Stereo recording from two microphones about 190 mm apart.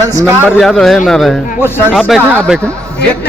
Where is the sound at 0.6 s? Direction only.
Centre (ahead or behind).